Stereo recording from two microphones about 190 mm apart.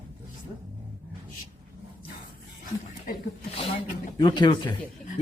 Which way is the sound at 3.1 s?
50° left (ahead or behind).